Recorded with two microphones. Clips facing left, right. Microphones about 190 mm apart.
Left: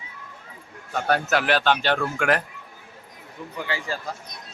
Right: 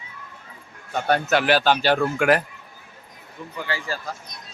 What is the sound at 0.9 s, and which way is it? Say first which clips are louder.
Speech: right 2 dB; centre (ahead or behind).